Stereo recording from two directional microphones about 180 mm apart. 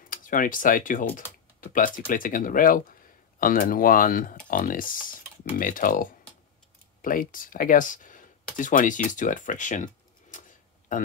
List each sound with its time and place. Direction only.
0.1 s speech: 50° left (ahead or behind)